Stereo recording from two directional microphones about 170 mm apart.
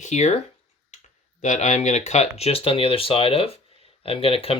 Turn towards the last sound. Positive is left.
turn(degrees=35)  # may be behind; listen again after turning